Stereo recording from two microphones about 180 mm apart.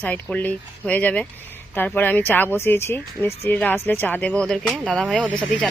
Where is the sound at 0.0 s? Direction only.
5° left (ahead or behind).